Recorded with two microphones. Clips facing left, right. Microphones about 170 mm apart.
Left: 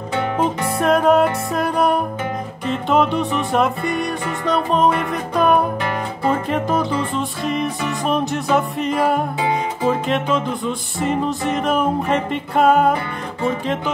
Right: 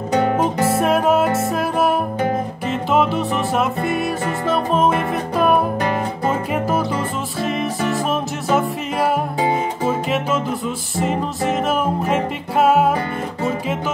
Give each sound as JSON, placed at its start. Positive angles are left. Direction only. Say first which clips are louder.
{"t": 0.1, "sound": "music", "louder": "right 3 dB", "side_deg": -40}
{"t": 0.7, "sound": "music", "louder": "left 4 dB", "side_deg": -5}